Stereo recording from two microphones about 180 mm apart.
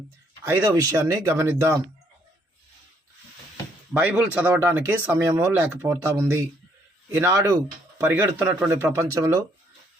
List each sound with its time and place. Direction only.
0.4 s speech: 15° right (ahead or behind)
3.9 s speech: 10° right (ahead or behind)